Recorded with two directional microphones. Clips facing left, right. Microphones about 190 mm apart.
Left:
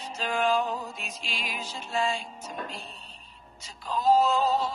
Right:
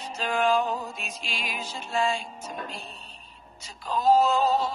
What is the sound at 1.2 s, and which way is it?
Music, 65° right (ahead or behind).